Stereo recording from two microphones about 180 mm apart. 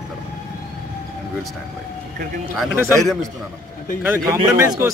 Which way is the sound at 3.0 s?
Centre (ahead or behind).